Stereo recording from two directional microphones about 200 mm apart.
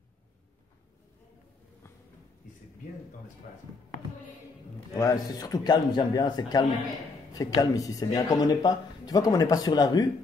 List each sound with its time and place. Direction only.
4.9 s speech: 20° left (ahead or behind)